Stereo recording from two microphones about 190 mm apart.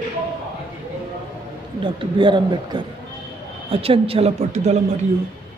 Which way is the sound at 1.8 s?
25° right (ahead or behind).